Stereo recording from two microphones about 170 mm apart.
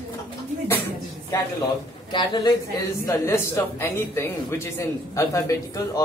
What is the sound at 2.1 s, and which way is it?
A man's voice, 25° left (ahead or behind).